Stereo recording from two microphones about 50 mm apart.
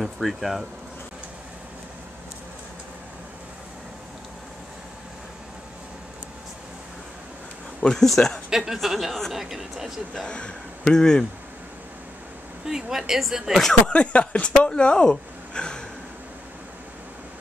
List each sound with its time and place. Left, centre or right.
0.0 s speech: centre
7.8 s speech: centre
8.5 s speech: centre
10.1 s speech: centre
12.6 s speech: centre
13.8 s speech: left